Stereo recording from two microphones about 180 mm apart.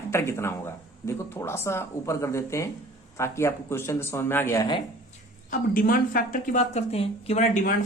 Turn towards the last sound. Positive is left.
turn(degrees=40)  # may be behind; listen again after turning